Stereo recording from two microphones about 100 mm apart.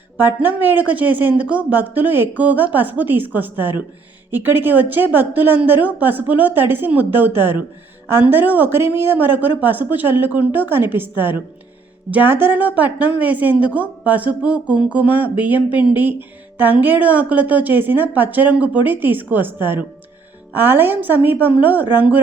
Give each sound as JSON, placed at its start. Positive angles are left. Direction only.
{"t": 0.3, "sound": "a woman's voice", "side_deg": -20}